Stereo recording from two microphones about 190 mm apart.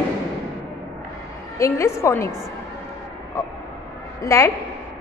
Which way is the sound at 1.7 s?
15° left (ahead or behind).